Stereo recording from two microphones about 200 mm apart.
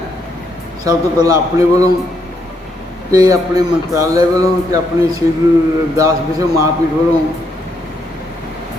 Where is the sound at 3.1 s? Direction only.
20° right (ahead or behind).